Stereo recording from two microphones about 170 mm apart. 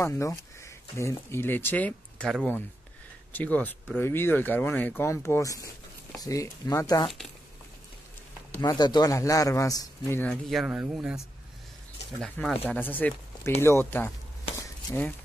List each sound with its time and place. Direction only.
0.0 s speech: 15° left (ahead or behind)
3.3 s speech: 10° left (ahead or behind)
8.5 s speech: 25° left (ahead or behind)
10.2 s speech: centre (ahead or behind)